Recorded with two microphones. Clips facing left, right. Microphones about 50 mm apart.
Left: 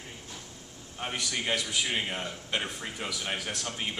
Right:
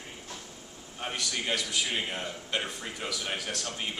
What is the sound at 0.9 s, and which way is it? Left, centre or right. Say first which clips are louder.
A man's voice: left 1 dB; centre.